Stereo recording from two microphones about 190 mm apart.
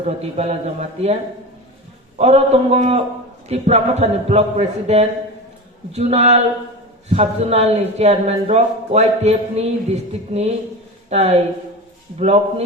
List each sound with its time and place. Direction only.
0.0 s speech: 35° right (ahead or behind)